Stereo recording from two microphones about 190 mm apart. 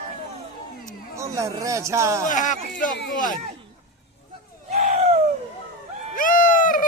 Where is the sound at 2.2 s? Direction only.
40° left (ahead or behind).